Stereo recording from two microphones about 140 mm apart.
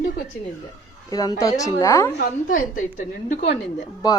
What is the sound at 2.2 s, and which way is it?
A woman's voice, 70° left (ahead or behind).